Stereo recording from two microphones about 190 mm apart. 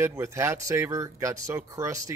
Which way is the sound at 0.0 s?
15° right (ahead or behind).